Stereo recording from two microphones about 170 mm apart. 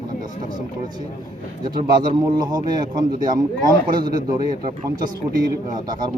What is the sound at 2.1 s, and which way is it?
Speech, 25° right (ahead or behind).